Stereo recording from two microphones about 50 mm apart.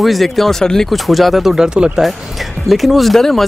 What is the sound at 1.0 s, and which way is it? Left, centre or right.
Speech, centre.